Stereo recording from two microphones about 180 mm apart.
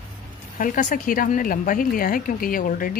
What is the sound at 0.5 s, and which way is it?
A woman's voice, 50° left (ahead or behind).